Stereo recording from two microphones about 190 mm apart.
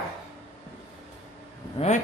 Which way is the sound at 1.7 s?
35° left (ahead or behind).